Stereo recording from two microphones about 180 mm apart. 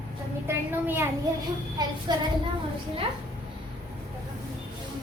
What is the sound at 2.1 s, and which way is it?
Speech, 25° right (ahead or behind).